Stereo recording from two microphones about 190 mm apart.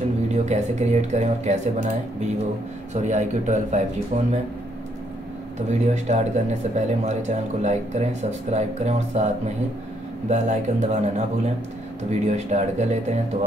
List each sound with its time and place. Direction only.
0.3 s speech: 35° right (ahead or behind)
5.7 s speech: 40° right (ahead or behind)
10.3 s speech: 40° right (ahead or behind)